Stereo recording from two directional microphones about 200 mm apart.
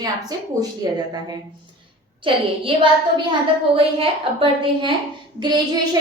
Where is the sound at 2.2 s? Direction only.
25° right (ahead or behind).